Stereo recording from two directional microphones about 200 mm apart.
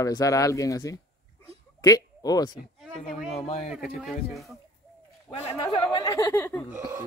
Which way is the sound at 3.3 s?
30° left (ahead or behind).